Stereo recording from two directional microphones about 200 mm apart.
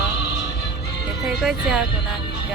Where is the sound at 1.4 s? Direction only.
Centre (ahead or behind).